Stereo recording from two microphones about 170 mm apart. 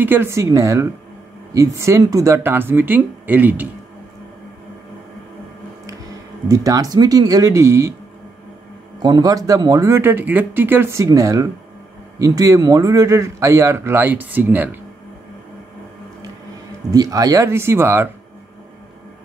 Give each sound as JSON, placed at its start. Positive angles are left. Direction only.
{"t": 0.0, "sound": "a man's voice", "side_deg": -15}
{"t": 6.5, "sound": "speech", "side_deg": -20}
{"t": 9.0, "sound": "a man's voice", "side_deg": -25}
{"t": 16.9, "sound": "a man's voice", "side_deg": -20}